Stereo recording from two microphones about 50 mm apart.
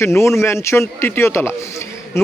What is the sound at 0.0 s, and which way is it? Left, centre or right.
Speech, left.